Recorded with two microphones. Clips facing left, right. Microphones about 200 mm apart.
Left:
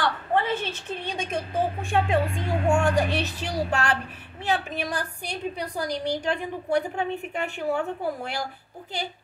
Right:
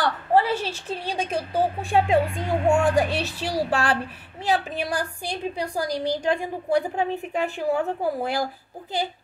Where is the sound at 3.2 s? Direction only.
35° right (ahead or behind).